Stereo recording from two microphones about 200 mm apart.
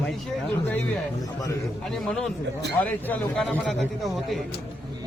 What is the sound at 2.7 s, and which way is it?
Speech, 10° left (ahead or behind).